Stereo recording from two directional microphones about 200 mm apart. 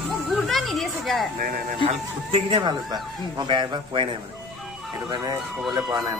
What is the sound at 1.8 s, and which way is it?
Speech, 25° right (ahead or behind).